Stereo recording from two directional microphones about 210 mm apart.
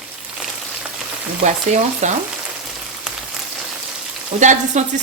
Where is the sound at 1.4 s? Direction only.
35° right (ahead or behind).